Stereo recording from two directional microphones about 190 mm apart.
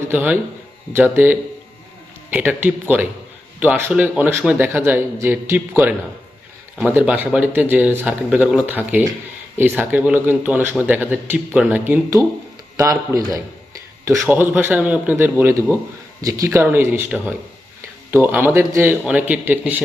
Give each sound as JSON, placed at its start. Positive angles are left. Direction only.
{"t": 0.1, "sound": "a man's voice", "side_deg": -10}